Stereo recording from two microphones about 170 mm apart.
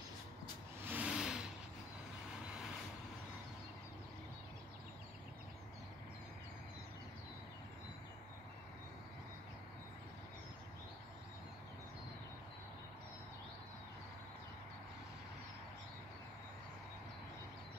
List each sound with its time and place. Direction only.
0.8 s vehicle: 10° right (ahead or behind)